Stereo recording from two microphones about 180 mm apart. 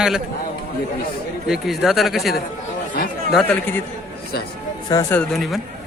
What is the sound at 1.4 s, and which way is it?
Speech, centre (ahead or behind).